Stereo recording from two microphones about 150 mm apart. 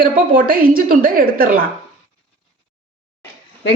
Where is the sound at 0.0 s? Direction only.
70° right (ahead or behind).